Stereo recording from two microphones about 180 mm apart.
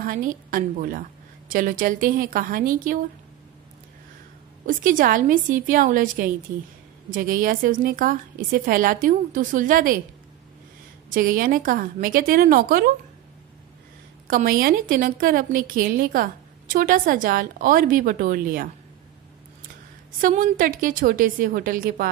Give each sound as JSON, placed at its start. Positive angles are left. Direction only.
{"t": 0.0, "sound": "a woman's voice", "side_deg": -50}
{"t": 4.6, "sound": "a woman's voice", "side_deg": -50}
{"t": 11.1, "sound": "a woman's voice", "side_deg": -50}
{"t": 14.2, "sound": "a woman's voice", "side_deg": -55}
{"t": 20.2, "sound": "a woman's voice", "side_deg": -50}